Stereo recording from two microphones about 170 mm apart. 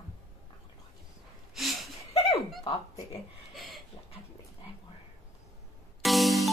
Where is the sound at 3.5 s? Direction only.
Centre (ahead or behind).